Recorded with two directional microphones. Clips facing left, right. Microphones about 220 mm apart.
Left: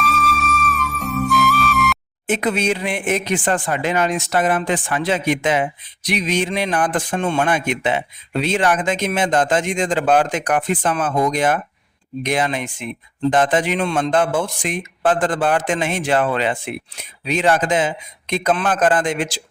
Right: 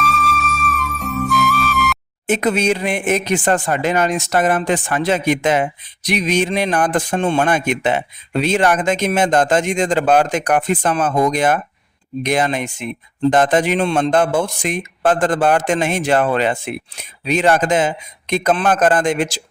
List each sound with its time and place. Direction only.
0.0 s flute: centre (ahead or behind)
2.2 s a man's voice: 40° right (ahead or behind)